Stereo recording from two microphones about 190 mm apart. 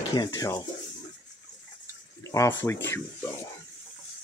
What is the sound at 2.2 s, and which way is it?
Speech, 15° left (ahead or behind).